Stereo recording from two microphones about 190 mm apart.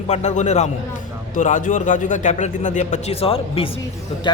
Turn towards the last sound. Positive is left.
turn(degrees=25)  # may be behind; listen again after turning